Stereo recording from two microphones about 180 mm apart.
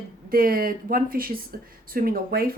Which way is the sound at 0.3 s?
55° right (ahead or behind).